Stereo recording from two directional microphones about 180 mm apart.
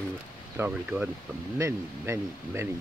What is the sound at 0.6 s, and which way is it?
Speech, 5° right (ahead or behind).